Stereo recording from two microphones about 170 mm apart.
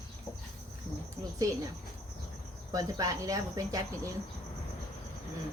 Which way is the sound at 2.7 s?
20° right (ahead or behind).